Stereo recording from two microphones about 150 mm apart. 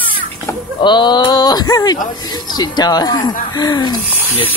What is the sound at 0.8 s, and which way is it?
Speech, 30° left (ahead or behind).